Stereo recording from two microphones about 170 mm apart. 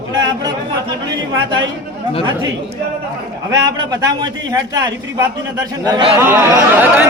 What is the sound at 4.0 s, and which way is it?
A man's voice, 25° right (ahead or behind).